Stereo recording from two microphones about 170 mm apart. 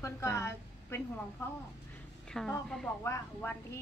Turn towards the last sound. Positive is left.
turn(degrees=15)  # may be behind; listen again after turning